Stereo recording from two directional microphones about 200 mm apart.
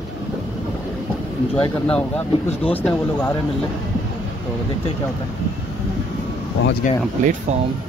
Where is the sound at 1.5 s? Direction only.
10° left (ahead or behind).